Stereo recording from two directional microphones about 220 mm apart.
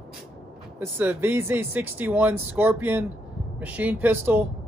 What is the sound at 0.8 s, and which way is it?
Speech, 10° right (ahead or behind).